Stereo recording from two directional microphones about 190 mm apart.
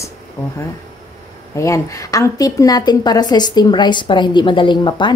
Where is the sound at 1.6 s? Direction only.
15° left (ahead or behind).